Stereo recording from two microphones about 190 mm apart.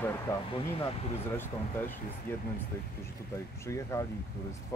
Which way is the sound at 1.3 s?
10° left (ahead or behind).